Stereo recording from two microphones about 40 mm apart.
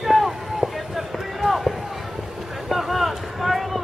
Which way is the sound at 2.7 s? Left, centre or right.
Centre.